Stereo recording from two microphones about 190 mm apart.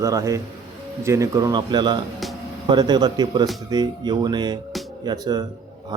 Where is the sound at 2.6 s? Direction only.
20° right (ahead or behind).